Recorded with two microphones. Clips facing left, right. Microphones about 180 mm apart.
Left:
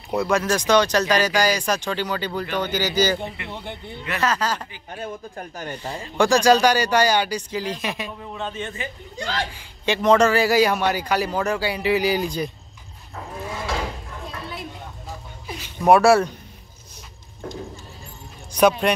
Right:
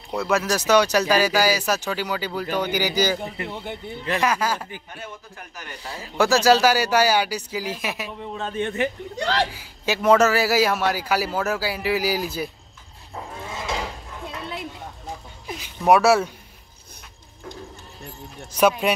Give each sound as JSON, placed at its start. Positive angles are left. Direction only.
{"t": 0.1, "sound": "speech", "side_deg": -5}
{"t": 5.0, "sound": "speech", "side_deg": 35}
{"t": 5.9, "sound": "speech", "side_deg": -5}
{"t": 8.5, "sound": "speech", "side_deg": -65}
{"t": 9.5, "sound": "a man's voice", "side_deg": -5}
{"t": 15.9, "sound": "a man's voice", "side_deg": -5}
{"t": 18.5, "sound": "speech", "side_deg": -5}